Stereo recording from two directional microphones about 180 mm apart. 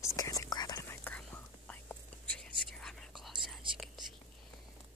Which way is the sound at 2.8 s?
5° left (ahead or behind).